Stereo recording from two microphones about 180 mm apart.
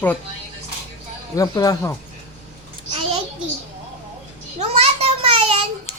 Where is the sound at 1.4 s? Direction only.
20° left (ahead or behind).